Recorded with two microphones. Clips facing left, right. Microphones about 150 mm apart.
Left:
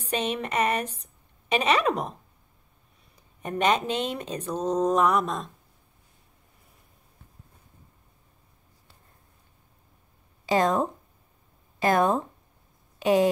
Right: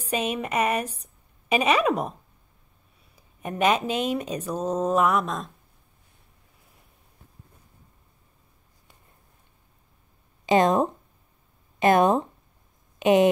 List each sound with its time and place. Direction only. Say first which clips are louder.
0.0 s a woman's voice: right 1 dB; 10° right (ahead or behind)
3.2 s speech: right 2 dB; 10° right (ahead or behind)
10.4 s speech: right 3 dB; 20° right (ahead or behind)